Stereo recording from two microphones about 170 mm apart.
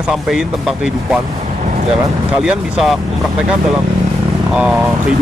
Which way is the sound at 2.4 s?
5° right (ahead or behind).